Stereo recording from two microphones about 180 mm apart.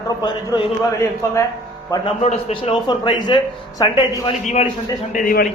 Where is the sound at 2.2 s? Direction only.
35° left (ahead or behind).